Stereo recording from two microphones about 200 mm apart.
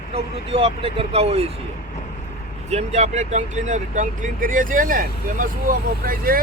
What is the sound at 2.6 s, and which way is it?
Speech, 35° right (ahead or behind).